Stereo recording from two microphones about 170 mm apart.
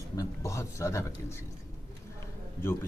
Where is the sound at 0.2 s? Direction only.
15° left (ahead or behind).